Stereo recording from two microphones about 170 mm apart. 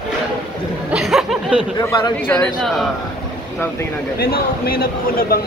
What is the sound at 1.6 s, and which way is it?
Speech, 25° left (ahead or behind).